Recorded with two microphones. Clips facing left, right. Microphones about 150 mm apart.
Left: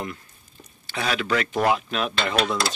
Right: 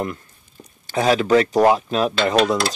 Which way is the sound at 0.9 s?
40° right (ahead or behind).